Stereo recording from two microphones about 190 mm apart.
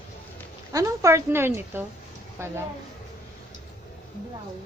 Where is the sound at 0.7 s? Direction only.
15° right (ahead or behind).